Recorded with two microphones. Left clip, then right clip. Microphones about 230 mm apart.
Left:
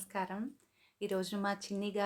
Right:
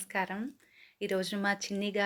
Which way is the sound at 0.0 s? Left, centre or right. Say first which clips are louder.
Right 5 dB; centre.